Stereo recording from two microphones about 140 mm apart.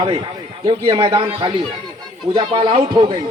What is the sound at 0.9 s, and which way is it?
A man's voice, 40° right (ahead or behind).